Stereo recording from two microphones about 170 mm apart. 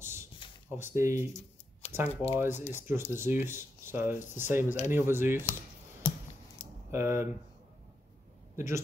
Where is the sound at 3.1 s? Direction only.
15° right (ahead or behind).